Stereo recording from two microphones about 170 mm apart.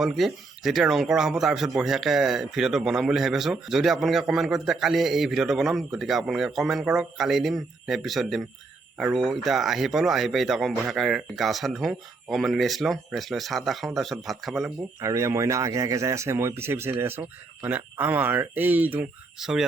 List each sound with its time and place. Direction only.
0.0 s speech: centre (ahead or behind)
15.0 s speech: 20° right (ahead or behind)